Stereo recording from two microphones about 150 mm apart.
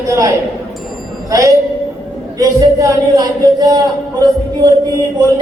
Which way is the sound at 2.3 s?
25° right (ahead or behind).